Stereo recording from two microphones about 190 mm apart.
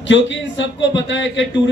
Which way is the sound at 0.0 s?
75° left (ahead or behind).